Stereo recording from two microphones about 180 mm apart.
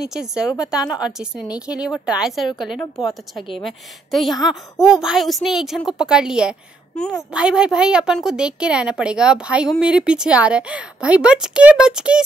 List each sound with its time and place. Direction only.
0.0 s a woman's voice: 5° right (ahead or behind)
2.8 s a woman's voice: 20° left (ahead or behind)
3.5 s a woman's voice: centre (ahead or behind)